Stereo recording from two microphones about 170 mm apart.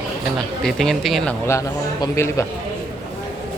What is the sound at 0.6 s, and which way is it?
Speech, centre (ahead or behind).